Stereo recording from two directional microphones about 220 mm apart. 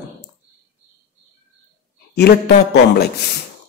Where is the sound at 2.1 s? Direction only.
45° left (ahead or behind).